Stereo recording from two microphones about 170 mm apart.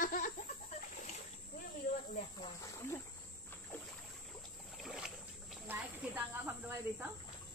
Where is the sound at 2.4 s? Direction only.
20° left (ahead or behind).